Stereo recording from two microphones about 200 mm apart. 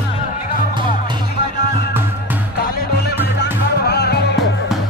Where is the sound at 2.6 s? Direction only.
50° left (ahead or behind).